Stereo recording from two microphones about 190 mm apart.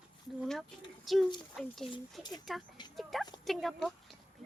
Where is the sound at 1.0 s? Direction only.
Centre (ahead or behind).